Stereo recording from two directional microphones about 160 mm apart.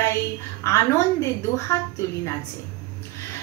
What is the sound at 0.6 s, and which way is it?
Speech, 20° left (ahead or behind).